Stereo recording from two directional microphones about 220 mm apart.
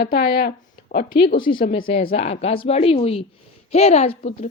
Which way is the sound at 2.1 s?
30° left (ahead or behind).